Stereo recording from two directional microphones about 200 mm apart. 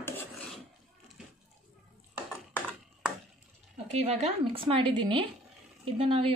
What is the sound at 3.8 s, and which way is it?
Speech, 35° right (ahead or behind).